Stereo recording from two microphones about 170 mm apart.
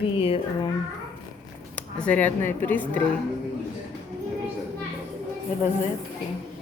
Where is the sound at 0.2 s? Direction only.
35° left (ahead or behind).